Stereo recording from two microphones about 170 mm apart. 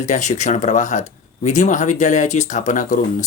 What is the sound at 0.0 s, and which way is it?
Speech, 45° left (ahead or behind).